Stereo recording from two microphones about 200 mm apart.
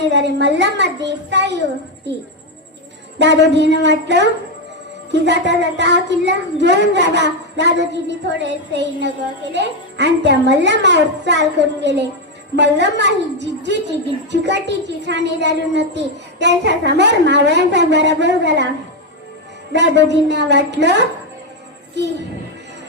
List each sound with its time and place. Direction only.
0.1 s a woman's voice: 60° right (ahead or behind)
3.2 s a woman's voice: 60° right (ahead or behind)
19.7 s a woman's voice: 60° right (ahead or behind)